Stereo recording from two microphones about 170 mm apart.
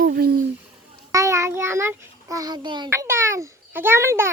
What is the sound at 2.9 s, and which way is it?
Babbling, 15° right (ahead or behind).